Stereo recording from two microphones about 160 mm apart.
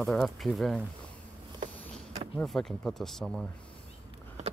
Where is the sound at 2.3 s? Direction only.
5° left (ahead or behind).